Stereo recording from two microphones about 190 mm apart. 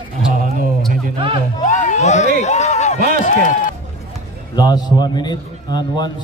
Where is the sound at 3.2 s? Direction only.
45° left (ahead or behind).